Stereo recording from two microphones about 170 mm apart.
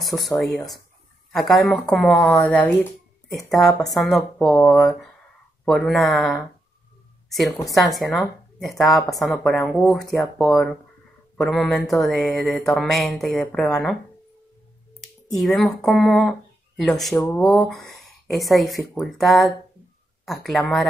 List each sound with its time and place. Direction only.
0.0 s a woman's voice: centre (ahead or behind)
15.0 s a woman's voice: centre (ahead or behind)